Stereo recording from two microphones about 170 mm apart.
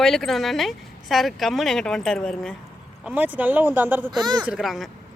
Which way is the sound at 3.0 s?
10° right (ahead or behind).